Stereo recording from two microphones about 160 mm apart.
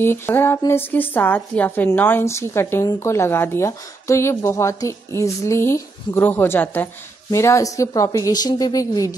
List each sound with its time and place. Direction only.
0.0 s a woman's voice: 15° left (ahead or behind)